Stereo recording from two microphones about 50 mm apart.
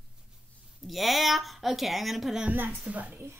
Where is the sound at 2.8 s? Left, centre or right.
Right.